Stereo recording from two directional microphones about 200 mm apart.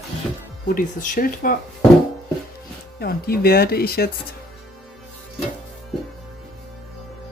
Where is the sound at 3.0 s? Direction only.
50° left (ahead or behind).